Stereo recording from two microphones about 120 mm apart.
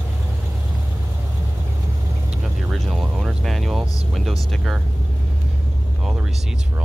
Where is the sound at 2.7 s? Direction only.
Centre (ahead or behind).